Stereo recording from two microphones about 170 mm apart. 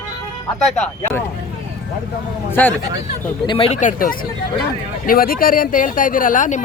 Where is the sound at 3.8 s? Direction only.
50° left (ahead or behind).